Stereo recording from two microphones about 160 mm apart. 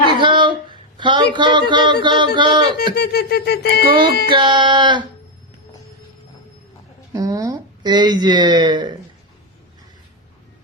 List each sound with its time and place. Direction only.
0.2 s speech: 30° right (ahead or behind)
2.7 s speech: 80° left
4.3 s speech: 30° right (ahead or behind)
7.1 s speech: 20° right (ahead or behind)